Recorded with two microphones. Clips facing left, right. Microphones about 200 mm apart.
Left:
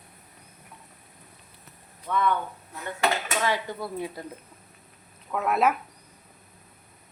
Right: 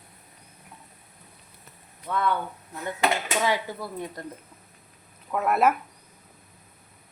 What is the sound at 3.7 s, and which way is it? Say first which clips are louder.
Speech: left 2 dB; 5° left (ahead or behind).